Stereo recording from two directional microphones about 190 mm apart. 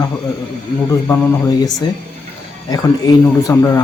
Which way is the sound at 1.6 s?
20° left (ahead or behind).